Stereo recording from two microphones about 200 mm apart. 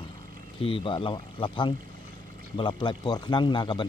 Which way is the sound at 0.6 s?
25° left (ahead or behind).